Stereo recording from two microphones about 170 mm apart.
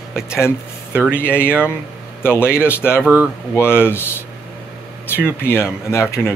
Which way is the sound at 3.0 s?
10° right (ahead or behind).